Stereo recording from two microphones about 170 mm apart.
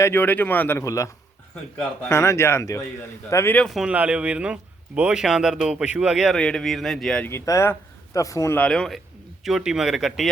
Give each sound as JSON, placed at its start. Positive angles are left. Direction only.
{"t": 0.0, "sound": "speech", "side_deg": 10}
{"t": 7.3, "sound": "speech", "side_deg": 15}